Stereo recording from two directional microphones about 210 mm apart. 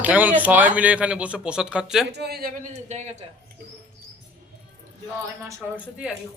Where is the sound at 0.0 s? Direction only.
5° right (ahead or behind).